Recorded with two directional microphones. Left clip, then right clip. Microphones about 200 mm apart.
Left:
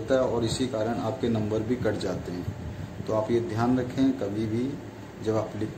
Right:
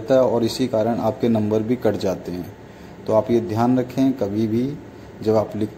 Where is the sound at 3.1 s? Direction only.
25° right (ahead or behind).